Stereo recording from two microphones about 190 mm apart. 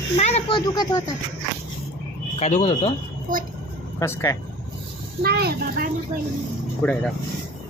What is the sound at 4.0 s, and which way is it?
Speech, 15° left (ahead or behind).